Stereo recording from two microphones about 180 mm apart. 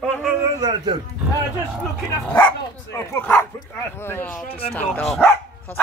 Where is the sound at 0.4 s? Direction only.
25° right (ahead or behind).